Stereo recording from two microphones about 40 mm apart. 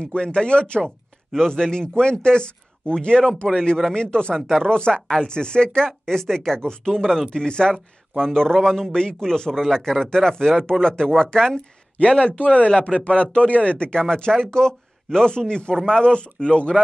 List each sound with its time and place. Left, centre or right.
0.0 s speech: left
0.8 s speech: centre
7.2 s speech: left
12.0 s speech: left